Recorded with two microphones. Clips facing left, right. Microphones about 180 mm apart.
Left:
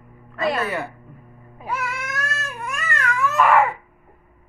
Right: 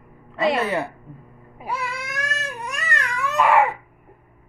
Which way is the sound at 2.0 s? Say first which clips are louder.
Even; 15° right (ahead or behind).